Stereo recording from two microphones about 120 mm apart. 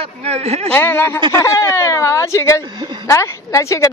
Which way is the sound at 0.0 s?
60° right (ahead or behind).